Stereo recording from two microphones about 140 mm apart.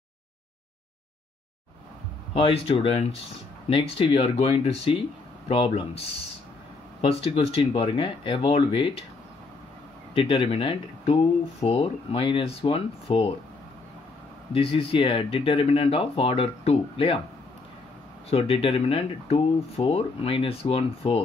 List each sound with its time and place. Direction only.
2.3 s speech: 40° left (ahead or behind)
10.1 s speech: 40° left (ahead or behind)
14.5 s speech: 40° left (ahead or behind)
18.3 s speech: 40° left (ahead or behind)